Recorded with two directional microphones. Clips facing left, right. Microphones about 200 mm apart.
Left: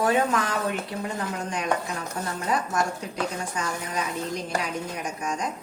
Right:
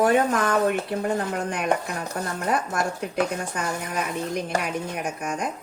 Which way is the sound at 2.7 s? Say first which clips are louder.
Right 1 dB; 60° right (ahead or behind).